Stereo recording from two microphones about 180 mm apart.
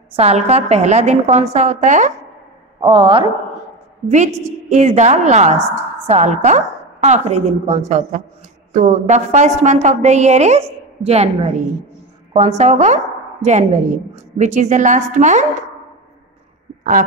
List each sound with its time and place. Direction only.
0.1 s a woman's voice: 35° right (ahead or behind)
2.8 s a woman's voice: 30° right (ahead or behind)
4.1 s a woman's voice: 40° right (ahead or behind)